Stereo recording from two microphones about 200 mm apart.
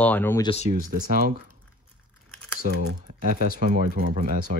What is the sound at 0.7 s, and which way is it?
Speech, 45° right (ahead or behind).